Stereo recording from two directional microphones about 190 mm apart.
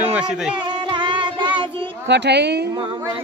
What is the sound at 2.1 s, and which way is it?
Speech, 60° right (ahead or behind).